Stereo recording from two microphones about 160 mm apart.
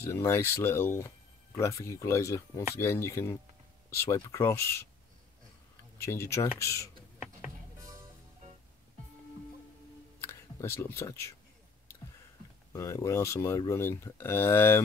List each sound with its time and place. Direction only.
0.0 s speech: 15° left (ahead or behind)
6.0 s speech: 15° left (ahead or behind)
10.2 s speech: 15° left (ahead or behind)
12.7 s speech: 20° left (ahead or behind)